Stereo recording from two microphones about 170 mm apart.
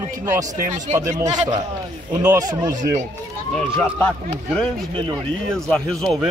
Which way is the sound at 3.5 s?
5° left (ahead or behind).